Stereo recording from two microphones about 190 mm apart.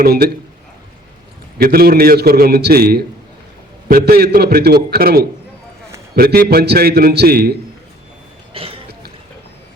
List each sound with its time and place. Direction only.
0.0 s a man's voice: 50° right (ahead or behind)
1.5 s a man's voice: 55° right (ahead or behind)
8.5 s cough: 30° right (ahead or behind)